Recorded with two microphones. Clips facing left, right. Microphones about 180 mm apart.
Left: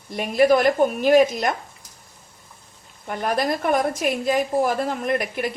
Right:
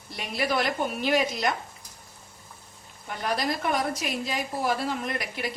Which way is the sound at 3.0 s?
50° left (ahead or behind).